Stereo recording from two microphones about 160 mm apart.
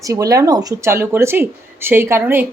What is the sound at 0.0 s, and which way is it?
Speech, 20° right (ahead or behind).